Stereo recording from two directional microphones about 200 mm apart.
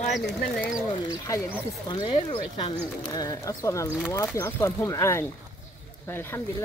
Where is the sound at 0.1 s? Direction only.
Centre (ahead or behind).